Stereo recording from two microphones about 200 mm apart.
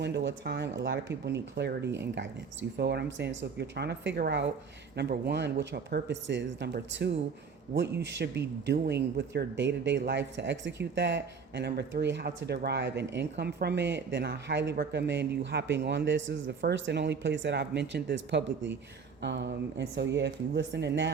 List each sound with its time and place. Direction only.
0.0 s speech: 60° right (ahead or behind)